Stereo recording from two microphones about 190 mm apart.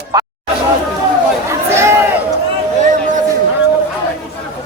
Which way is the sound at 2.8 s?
40° right (ahead or behind).